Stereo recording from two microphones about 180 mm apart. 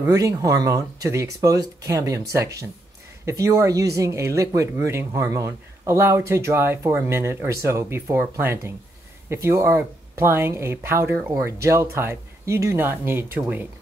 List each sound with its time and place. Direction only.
0.0 s speech: 20° right (ahead or behind)